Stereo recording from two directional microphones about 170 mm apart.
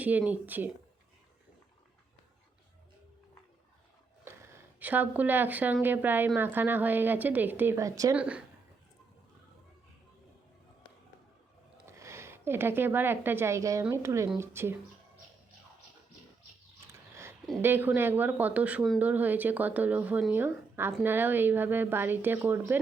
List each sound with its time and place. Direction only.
0.0 s speech: 10° right (ahead or behind)
4.8 s speech: 10° right (ahead or behind)
8.1 s speech: 5° right (ahead or behind)
11.9 s a woman's voice: 15° right (ahead or behind)
17.6 s speech: 10° right (ahead or behind)